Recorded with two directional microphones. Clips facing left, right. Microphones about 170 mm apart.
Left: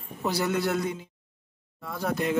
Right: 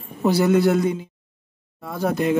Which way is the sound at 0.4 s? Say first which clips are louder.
Right 10 dB; 5° right (ahead or behind).